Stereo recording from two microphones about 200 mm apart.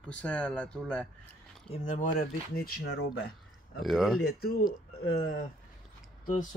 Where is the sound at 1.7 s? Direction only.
40° left (ahead or behind); by 3.1 s 60° left (ahead or behind).